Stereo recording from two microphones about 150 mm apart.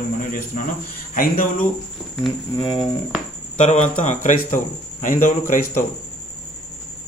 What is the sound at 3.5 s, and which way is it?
Speech, 55° left (ahead or behind).